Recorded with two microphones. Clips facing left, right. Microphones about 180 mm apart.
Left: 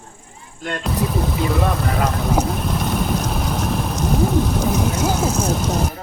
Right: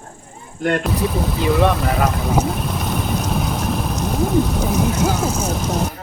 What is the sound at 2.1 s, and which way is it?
Boat, centre (ahead or behind).